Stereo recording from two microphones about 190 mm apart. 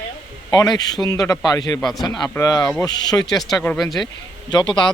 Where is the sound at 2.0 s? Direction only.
20° left (ahead or behind).